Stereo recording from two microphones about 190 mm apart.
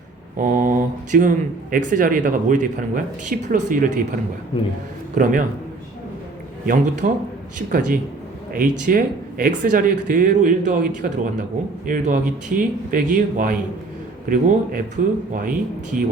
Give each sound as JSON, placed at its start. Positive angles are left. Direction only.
{"t": 0.3, "sound": "speech", "side_deg": -45}
{"t": 6.7, "sound": "speech", "side_deg": -40}